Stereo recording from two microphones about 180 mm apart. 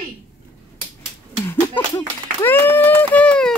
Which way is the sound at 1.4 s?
15° left (ahead or behind).